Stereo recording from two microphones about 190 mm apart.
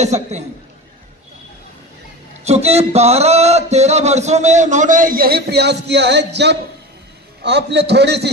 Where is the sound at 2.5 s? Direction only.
35° right (ahead or behind).